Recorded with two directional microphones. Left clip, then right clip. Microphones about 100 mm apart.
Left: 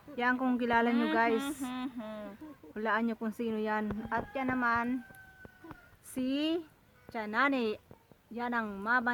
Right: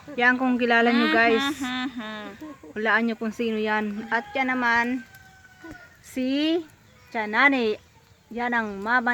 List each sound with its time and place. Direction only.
0.2 s speech: 15° left (ahead or behind)
6.1 s speech: 5° left (ahead or behind)